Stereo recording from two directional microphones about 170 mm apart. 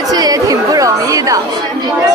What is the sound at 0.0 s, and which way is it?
Chatter, 20° right (ahead or behind).